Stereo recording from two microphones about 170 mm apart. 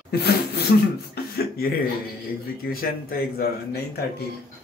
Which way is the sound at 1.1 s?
65° left (ahead or behind).